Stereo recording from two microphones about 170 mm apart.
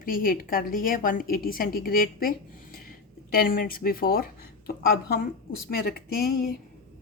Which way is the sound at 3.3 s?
60° left (ahead or behind).